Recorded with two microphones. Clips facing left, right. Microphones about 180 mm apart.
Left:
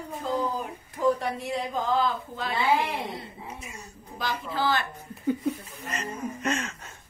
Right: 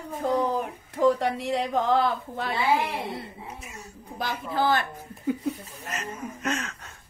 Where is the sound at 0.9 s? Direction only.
80° right; by 2.5 s 60° right (ahead or behind).